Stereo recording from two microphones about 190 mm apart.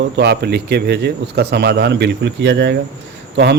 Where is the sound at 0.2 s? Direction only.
60° right (ahead or behind).